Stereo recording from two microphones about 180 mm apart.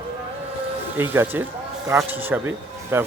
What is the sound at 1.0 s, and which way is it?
Speech, 10° right (ahead or behind).